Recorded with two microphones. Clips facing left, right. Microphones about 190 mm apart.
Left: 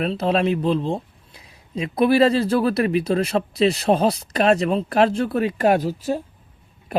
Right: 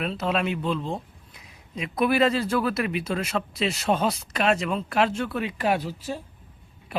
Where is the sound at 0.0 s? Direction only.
35° left (ahead or behind).